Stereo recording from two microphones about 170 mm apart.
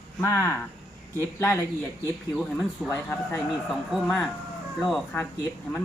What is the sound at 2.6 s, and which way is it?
Speech, 10° left (ahead or behind).